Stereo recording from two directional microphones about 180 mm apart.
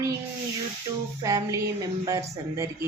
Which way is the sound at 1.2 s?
15° right (ahead or behind).